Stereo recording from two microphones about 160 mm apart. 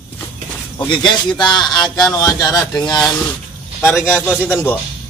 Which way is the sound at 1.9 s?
25° left (ahead or behind).